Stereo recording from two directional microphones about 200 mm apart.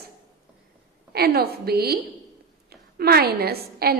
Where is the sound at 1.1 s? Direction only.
50° right (ahead or behind).